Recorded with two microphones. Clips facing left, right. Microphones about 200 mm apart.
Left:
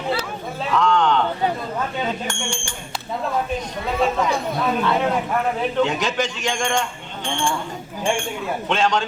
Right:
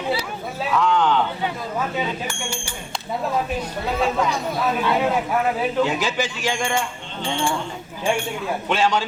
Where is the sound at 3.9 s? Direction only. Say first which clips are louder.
Left 2 dB; centre (ahead or behind).